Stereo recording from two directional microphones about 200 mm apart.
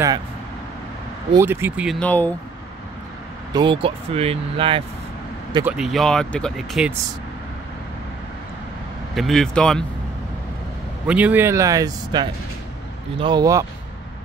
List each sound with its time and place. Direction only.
1.3 s a man's voice: 10° right (ahead or behind)
2.0 s speech: 10° left (ahead or behind)
3.5 s speech: 25° right (ahead or behind)
5.7 s speech: centre (ahead or behind)
9.1 s speech: centre (ahead or behind)
11.1 s a man's voice: 5° right (ahead or behind)